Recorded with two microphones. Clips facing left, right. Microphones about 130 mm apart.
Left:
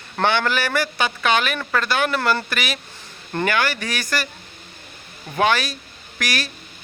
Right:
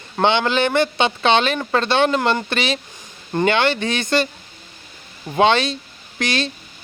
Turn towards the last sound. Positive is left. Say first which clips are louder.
# right 4 dB
turn(degrees=-25)  # may be behind; listen again after turning